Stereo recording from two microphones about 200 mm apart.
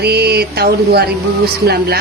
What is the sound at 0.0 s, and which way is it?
Speech, 55° right (ahead or behind).